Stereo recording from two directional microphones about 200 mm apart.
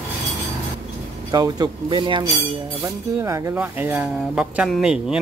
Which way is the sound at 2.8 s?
15° right (ahead or behind).